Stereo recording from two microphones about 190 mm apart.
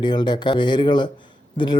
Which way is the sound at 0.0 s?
25° left (ahead or behind).